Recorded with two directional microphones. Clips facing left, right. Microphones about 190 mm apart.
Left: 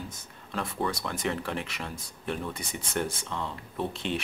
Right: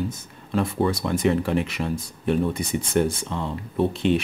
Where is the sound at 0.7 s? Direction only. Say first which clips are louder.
Right 6 dB; 25° right (ahead or behind).